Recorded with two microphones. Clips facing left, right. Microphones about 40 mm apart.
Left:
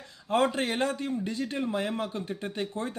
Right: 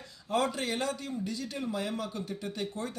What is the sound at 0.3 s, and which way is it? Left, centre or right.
A man's voice, left.